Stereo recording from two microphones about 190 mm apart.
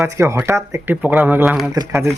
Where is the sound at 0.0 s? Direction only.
15° right (ahead or behind).